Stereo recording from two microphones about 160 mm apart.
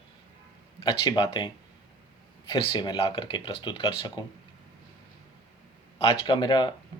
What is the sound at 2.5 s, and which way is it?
Speech, 30° left (ahead or behind).